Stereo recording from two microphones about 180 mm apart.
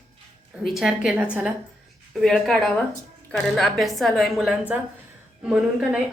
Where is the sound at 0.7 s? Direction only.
5° right (ahead or behind).